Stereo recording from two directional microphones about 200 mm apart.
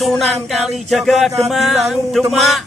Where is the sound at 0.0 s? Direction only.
Centre (ahead or behind).